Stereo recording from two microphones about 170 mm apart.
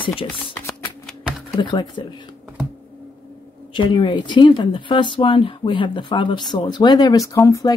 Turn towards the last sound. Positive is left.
turn(degrees=20)  # may be behind; listen again after turning